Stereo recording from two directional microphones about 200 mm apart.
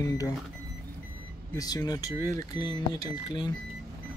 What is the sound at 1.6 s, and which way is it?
Speech, 20° left (ahead or behind).